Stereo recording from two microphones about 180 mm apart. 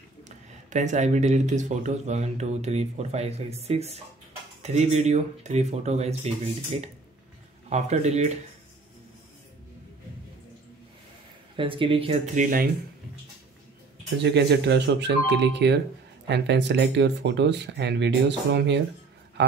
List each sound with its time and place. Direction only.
0.5 s speech: 40° right (ahead or behind)
11.5 s speech: 30° right (ahead or behind)
12.4 s speech: 50° right (ahead or behind)
14.1 s speech: 70° right (ahead or behind)